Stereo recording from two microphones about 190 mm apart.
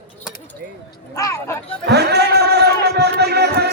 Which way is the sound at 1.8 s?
60° right (ahead or behind).